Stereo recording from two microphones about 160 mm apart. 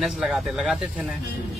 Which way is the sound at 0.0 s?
Centre (ahead or behind).